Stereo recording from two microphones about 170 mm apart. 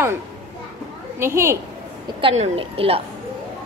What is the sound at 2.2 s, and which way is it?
Speech, 30° right (ahead or behind).